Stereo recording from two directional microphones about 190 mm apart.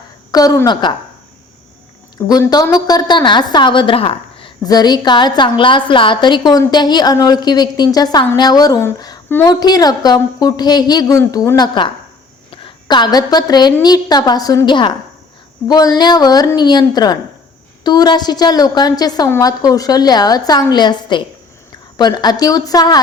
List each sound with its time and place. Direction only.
0.3 s a woman's voice: 20° left (ahead or behind)
2.2 s a woman's voice: 20° left (ahead or behind)